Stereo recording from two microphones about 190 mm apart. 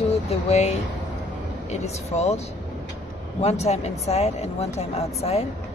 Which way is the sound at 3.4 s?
35° left (ahead or behind).